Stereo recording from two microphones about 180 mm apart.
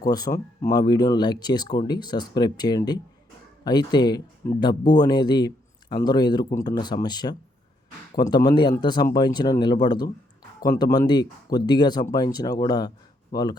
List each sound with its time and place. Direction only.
0.0 s speech: 20° left (ahead or behind)